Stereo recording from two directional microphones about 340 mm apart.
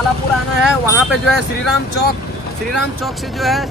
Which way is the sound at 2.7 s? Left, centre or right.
Centre.